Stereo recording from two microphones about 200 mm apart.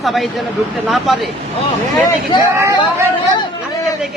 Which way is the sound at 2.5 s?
15° right (ahead or behind).